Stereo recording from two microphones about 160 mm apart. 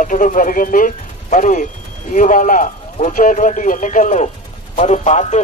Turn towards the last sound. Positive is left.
turn(degrees=45)  # may be behind; listen again after turning